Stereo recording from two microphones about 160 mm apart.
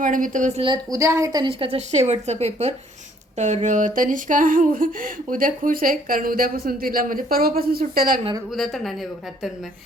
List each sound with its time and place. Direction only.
0.0 s a woman's voice: 55° right (ahead or behind)
0.6 s a woman's voice: 25° right (ahead or behind); by 8.2 s 65° right (ahead or behind)
8.5 s speech: centre (ahead or behind)